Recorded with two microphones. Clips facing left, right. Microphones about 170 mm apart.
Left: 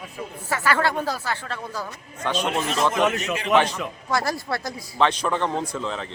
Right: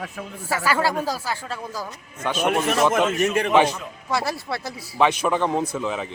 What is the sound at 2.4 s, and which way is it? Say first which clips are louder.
A man's voice: right 5 dB; 60° right (ahead or behind).